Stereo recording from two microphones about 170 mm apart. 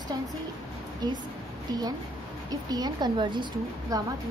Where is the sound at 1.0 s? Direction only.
25° right (ahead or behind).